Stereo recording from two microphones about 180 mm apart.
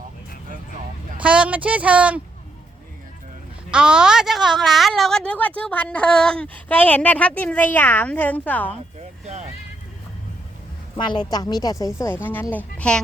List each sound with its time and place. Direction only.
1.2 s speech: 5° right (ahead or behind)
3.7 s a woman's voice: 5° right (ahead or behind)
9.0 s vehicle: 40° right (ahead or behind)
10.9 s a woman's voice: 25° left (ahead or behind); by 13.0 s 5° left (ahead or behind)